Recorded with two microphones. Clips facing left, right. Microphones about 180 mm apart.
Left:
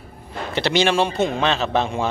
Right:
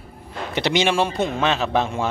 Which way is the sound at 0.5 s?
15° right (ahead or behind).